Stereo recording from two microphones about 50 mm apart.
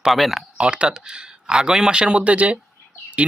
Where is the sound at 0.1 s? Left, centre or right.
Centre.